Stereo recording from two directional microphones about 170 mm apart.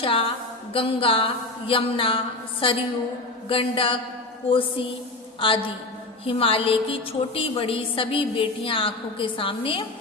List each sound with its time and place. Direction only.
0.0 s a woman's voice: 35° left (ahead or behind)